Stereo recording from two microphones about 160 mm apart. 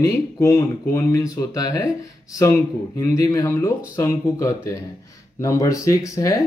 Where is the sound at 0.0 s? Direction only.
15° left (ahead or behind).